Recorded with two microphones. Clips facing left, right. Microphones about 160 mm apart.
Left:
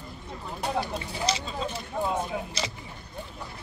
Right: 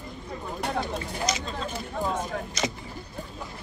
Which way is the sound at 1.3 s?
30° left (ahead or behind).